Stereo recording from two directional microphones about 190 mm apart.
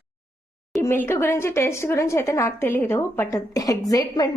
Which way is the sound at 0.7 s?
15° left (ahead or behind).